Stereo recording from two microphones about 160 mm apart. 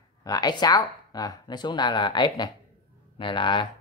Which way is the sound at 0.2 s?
25° left (ahead or behind).